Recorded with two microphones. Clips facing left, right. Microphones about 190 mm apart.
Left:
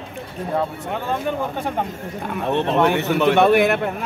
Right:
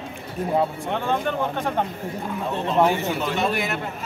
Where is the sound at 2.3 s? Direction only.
70° left (ahead or behind).